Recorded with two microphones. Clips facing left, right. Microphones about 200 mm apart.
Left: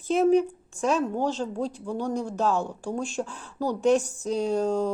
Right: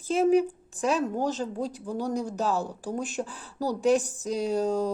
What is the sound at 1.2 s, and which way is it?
Speech, 40° right (ahead or behind).